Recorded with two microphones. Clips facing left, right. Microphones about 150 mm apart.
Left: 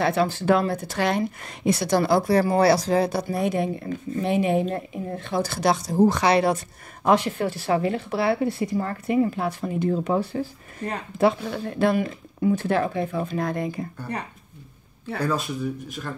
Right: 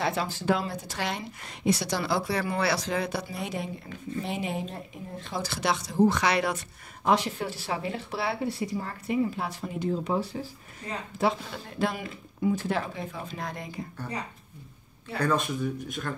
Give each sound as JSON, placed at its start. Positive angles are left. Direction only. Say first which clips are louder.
{"t": 0.0, "sound": "speech", "louder": "left 7 dB", "side_deg": 60}
{"t": 7.1, "sound": "speech", "louder": "left 5 dB", "side_deg": 55}
{"t": 15.6, "sound": "speech", "louder": "left 2 dB", "side_deg": 0}